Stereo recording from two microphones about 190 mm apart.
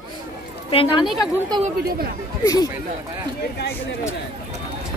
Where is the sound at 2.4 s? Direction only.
20° left (ahead or behind).